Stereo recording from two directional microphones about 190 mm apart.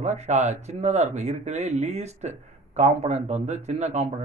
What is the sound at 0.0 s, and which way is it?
Speech, 35° right (ahead or behind).